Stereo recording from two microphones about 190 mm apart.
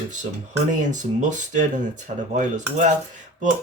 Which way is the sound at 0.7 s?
40° right (ahead or behind).